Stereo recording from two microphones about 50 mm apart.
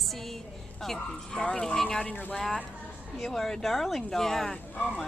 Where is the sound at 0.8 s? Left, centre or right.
Centre.